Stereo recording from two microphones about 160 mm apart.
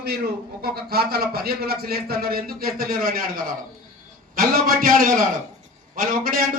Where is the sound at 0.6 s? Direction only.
75° right (ahead or behind).